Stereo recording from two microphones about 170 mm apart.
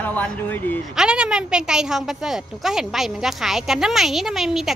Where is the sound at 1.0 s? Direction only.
5° right (ahead or behind).